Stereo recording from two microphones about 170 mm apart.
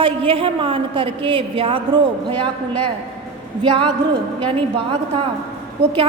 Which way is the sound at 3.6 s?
30° right (ahead or behind).